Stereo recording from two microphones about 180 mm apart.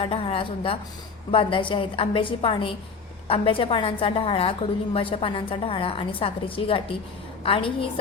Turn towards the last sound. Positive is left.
turn(degrees=30)  # may be behind; listen again after turning